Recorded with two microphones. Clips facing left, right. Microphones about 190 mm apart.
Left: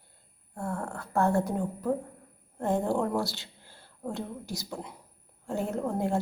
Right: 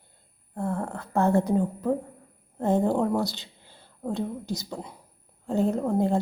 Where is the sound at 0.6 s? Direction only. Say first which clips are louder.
Right 4 dB; 15° right (ahead or behind).